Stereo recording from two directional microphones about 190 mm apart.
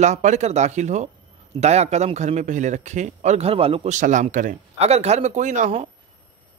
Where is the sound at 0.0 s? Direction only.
40° right (ahead or behind).